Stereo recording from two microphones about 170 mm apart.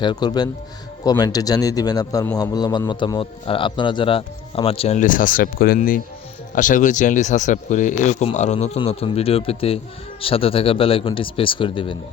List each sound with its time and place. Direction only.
0.0 s a man's voice: 25° left (ahead or behind)